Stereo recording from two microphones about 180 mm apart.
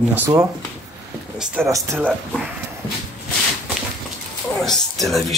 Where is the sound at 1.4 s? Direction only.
5° right (ahead or behind).